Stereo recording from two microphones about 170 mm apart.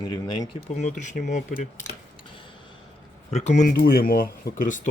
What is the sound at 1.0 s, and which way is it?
Speech, 45° left (ahead or behind).